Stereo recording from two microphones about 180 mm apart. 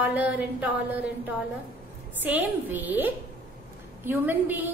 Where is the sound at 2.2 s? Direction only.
10° right (ahead or behind).